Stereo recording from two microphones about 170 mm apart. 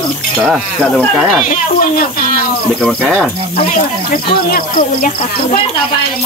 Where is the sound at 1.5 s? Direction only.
55° left (ahead or behind).